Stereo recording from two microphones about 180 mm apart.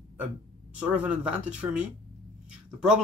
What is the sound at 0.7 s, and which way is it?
Speech, 5° right (ahead or behind).